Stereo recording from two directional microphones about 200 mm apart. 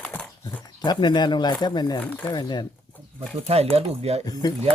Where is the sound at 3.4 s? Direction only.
30° right (ahead or behind).